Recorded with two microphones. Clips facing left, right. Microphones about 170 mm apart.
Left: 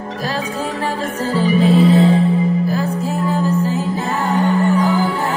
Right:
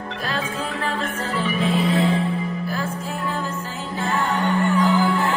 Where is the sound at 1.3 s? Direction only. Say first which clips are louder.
Left 9 dB; 35° left (ahead or behind).